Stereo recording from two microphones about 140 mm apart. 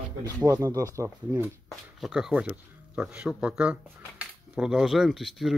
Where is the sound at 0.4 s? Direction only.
20° right (ahead or behind).